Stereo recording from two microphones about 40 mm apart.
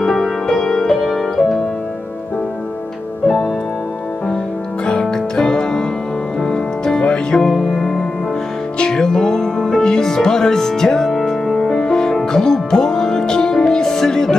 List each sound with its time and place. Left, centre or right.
0.0 s music: centre
5.1 s music: centre